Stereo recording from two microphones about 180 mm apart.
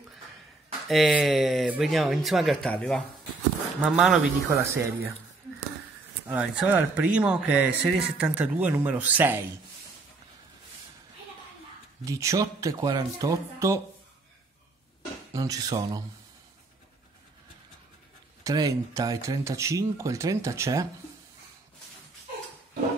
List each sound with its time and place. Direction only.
0.8 s speech: centre (ahead or behind)
4.5 s speech: 15° right (ahead or behind)
6.2 s speech: 5° right (ahead or behind)
12.0 s speech: 15° right (ahead or behind)
15.3 s speech: 20° right (ahead or behind)
18.4 s speech: 20° right (ahead or behind)